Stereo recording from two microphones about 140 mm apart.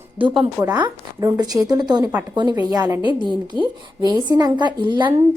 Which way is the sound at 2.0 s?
15° right (ahead or behind).